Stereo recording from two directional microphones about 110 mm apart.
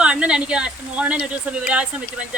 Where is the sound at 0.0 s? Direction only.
10° right (ahead or behind).